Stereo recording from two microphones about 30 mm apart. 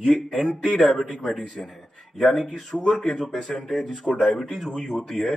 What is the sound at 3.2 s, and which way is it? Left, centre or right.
A man's voice, centre.